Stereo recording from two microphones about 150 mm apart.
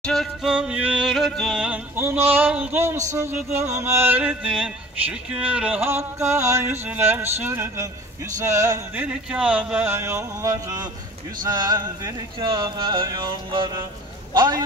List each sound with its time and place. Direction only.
0.0 s yodeling: centre (ahead or behind)
2.0 s speech: 15° right (ahead or behind)
8.4 s a sound: 20° right (ahead or behind)
8.9 s speech: 10° right (ahead or behind)
11.4 s a sound: 25° right (ahead or behind)
14.3 s speech: 30° right (ahead or behind)